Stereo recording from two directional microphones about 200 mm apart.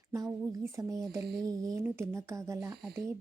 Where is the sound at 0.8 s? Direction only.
15° right (ahead or behind).